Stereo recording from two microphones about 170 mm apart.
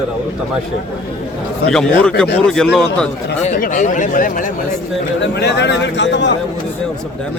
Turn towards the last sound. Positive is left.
turn(degrees=90)